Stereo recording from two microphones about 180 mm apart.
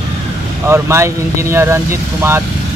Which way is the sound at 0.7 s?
15° right (ahead or behind).